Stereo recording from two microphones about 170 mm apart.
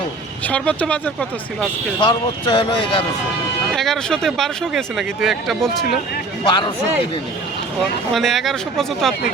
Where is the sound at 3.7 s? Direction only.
Centre (ahead or behind).